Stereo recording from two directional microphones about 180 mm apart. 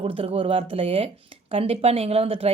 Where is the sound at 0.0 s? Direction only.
35° right (ahead or behind).